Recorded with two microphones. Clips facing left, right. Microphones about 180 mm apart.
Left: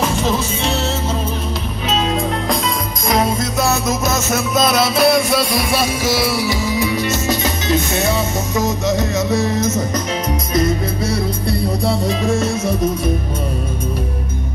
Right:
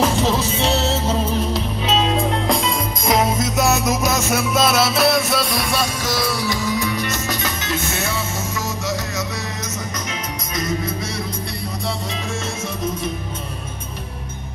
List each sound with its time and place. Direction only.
0.6 s music: 35° right (ahead or behind)
3.1 s music: 20° right (ahead or behind); by 7.2 s 5° left (ahead or behind)
7.7 s music: 35° left (ahead or behind)
8.5 s music: 20° left (ahead or behind); by 12.4 s 35° left (ahead or behind)